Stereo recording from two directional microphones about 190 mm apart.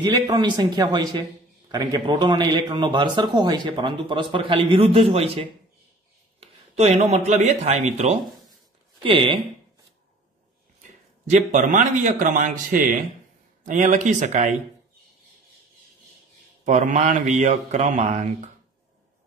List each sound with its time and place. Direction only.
0.0 s speech: 20° right (ahead or behind)
11.2 s a man's voice: 40° right (ahead or behind)
16.6 s speech: 40° right (ahead or behind)